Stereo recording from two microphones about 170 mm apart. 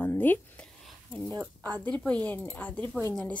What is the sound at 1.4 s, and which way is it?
Speech, 20° right (ahead or behind).